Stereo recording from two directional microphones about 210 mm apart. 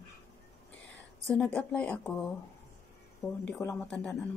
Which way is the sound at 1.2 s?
5° left (ahead or behind).